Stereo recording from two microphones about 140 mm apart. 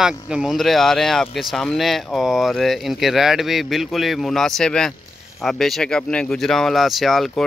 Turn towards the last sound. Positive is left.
turn(degrees=0)  # may be behind; listen again after turning